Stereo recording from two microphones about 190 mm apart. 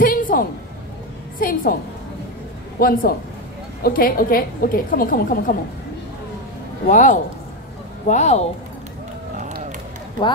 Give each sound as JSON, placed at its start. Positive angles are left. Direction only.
{"t": 0.0, "sound": "a sound", "side_deg": 50}
{"t": 1.4, "sound": "a woman's voice", "side_deg": 50}
{"t": 2.8, "sound": "a woman's voice", "side_deg": 50}
{"t": 6.9, "sound": "speech", "side_deg": 40}